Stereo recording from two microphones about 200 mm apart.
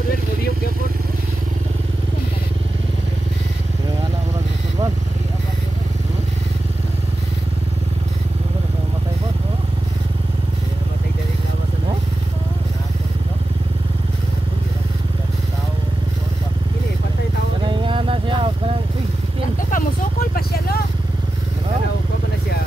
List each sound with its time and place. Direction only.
17.8 s vehicle: 25° right (ahead or behind)
19.7 s vehicle: 50° left (ahead or behind)